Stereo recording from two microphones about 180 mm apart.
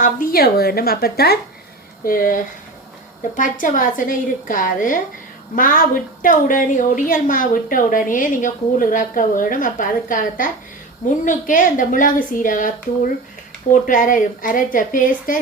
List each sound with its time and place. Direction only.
0.0 s a woman's voice: 50° left (ahead or behind)